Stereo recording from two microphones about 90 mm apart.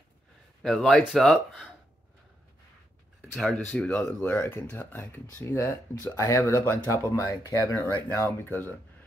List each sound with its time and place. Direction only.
0.6 s speech: centre (ahead or behind)
3.3 s speech: 5° left (ahead or behind)
4.2 s speech: 20° left (ahead or behind)